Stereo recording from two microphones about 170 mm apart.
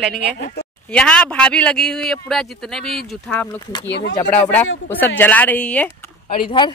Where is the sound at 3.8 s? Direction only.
90° left.